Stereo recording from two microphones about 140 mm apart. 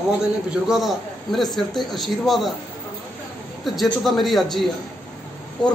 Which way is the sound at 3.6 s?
Centre (ahead or behind).